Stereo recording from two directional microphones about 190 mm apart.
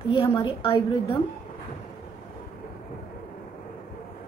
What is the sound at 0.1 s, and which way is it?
A woman's voice, 25° left (ahead or behind).